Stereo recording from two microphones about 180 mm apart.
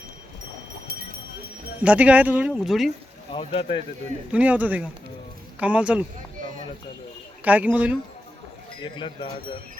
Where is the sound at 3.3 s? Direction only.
30° left (ahead or behind).